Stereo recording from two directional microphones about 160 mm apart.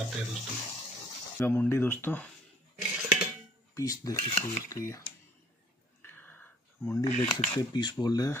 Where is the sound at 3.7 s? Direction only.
20° left (ahead or behind).